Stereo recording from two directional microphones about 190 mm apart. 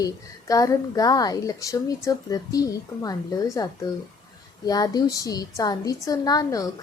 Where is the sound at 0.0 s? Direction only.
20° left (ahead or behind).